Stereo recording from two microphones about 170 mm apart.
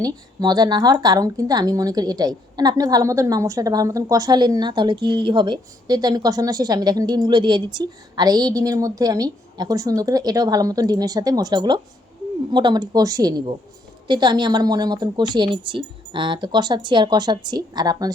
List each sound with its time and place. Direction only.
0.0 s speech: 20° right (ahead or behind)